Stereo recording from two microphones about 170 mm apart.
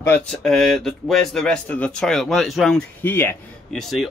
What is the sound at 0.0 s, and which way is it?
Speech, 5° left (ahead or behind).